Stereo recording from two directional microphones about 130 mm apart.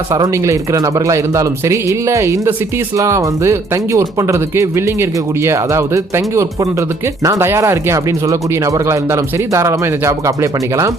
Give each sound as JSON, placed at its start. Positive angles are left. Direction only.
{"t": 0.1, "sound": "speech", "side_deg": -25}